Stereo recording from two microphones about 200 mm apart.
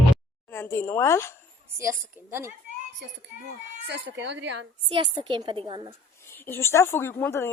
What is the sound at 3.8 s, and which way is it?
Speech, 60° right (ahead or behind).